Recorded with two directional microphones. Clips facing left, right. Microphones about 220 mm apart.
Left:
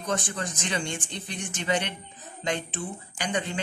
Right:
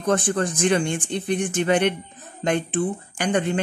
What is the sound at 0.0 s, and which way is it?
Speech, 55° right (ahead or behind).